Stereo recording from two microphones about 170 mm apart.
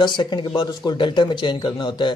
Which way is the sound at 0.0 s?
25° left (ahead or behind).